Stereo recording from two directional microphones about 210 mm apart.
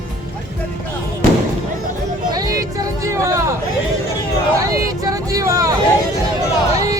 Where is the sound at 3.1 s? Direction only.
15° right (ahead or behind).